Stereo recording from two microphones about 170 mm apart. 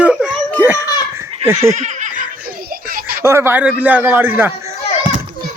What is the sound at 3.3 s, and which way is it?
A man's voice, 15° right (ahead or behind).